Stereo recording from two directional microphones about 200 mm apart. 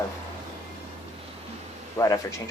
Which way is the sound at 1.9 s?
15° left (ahead or behind).